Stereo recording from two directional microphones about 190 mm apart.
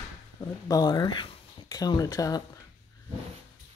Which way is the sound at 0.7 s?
20° left (ahead or behind).